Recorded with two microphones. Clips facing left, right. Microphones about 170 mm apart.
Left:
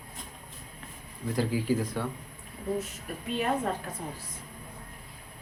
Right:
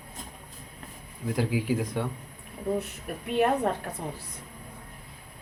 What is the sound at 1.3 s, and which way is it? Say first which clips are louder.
Speech: even; 15° right (ahead or behind).